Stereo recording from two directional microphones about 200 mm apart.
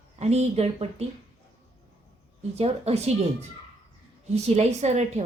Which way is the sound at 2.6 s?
30° right (ahead or behind).